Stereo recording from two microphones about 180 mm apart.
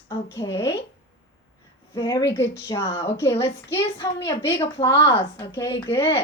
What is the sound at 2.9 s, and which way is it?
Speech, 35° left (ahead or behind).